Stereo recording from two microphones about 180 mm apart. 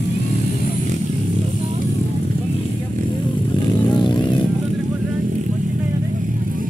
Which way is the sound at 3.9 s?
25° left (ahead or behind).